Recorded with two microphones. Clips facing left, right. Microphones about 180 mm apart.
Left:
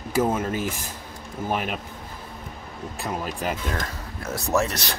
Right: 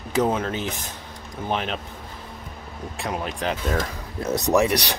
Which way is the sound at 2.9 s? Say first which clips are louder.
Right 1 dB; 5° left (ahead or behind).